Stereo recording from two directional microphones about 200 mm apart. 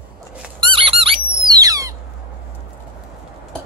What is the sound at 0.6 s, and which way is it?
Squeak, 25° right (ahead or behind).